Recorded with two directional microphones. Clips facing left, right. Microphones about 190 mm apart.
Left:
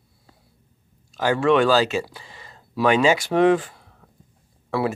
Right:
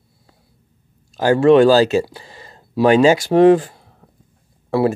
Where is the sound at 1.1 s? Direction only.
35° right (ahead or behind).